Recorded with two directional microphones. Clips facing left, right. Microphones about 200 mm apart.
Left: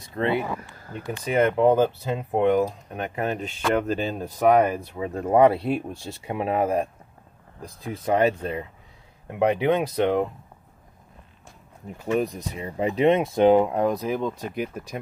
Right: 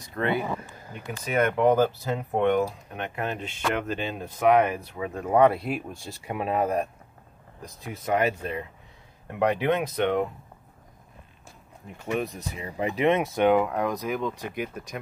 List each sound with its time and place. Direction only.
0.1 s speech: 25° left (ahead or behind)
0.7 s a sound: 15° right (ahead or behind)
1.2 s speech: 30° left (ahead or behind)
3.0 s speech: 40° left (ahead or behind)
9.3 s speech: 25° left (ahead or behind)
12.0 s speech: 35° left (ahead or behind)